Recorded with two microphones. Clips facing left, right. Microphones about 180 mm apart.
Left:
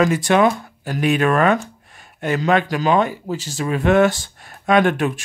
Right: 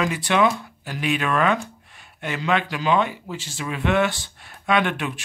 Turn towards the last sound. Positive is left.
turn(degrees=45)  # may be behind; listen again after turning